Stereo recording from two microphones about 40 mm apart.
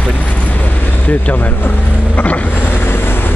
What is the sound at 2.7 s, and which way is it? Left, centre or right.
Vehicle, left.